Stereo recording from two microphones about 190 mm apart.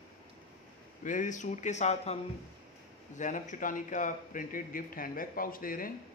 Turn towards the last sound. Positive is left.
turn(degrees=50)  # may be behind; listen again after turning